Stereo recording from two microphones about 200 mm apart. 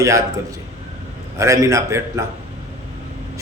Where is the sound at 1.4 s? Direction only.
15° right (ahead or behind).